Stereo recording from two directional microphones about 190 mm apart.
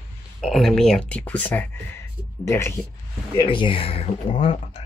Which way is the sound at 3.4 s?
25° left (ahead or behind).